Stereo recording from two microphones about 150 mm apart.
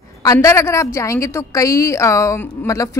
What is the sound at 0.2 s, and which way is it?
A woman's voice, 20° left (ahead or behind).